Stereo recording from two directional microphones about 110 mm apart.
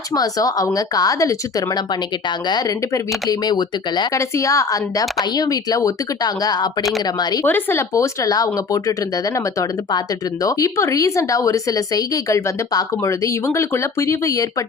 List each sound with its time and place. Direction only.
0.1 s speech: 35° left (ahead or behind)
4.1 s speech: 30° left (ahead or behind)
7.4 s speech: 20° left (ahead or behind)